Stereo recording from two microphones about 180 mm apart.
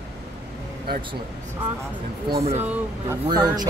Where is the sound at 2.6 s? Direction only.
10° right (ahead or behind).